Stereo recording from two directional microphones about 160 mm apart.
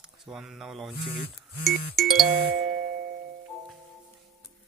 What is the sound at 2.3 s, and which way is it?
Music, 80° right.